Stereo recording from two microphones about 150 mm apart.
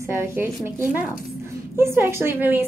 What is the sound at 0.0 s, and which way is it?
Speech, 15° right (ahead or behind).